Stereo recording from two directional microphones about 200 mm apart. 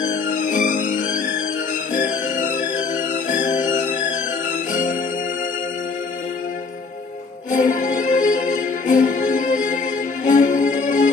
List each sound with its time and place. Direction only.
0.1 s music: 40° left (ahead or behind)
7.5 s music: 40° left (ahead or behind)